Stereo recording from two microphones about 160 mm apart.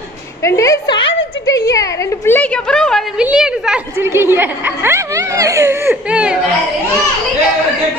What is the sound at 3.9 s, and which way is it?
Speech, 15° right (ahead or behind).